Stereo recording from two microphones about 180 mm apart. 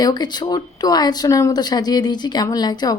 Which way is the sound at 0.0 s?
20° left (ahead or behind).